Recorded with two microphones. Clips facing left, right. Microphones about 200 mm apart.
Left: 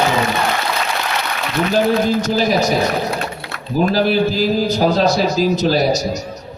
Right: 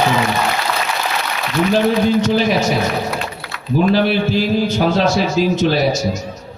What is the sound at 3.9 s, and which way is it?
A man's voice, 40° left (ahead or behind).